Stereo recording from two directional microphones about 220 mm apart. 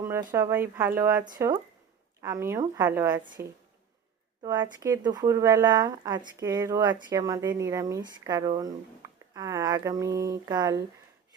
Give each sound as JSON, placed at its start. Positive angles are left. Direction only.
{"t": 0.0, "sound": "speech", "side_deg": -10}
{"t": 4.4, "sound": "speech", "side_deg": -15}